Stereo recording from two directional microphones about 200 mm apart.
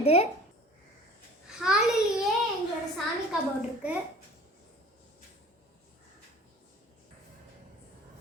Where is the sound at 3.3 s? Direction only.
5° right (ahead or behind).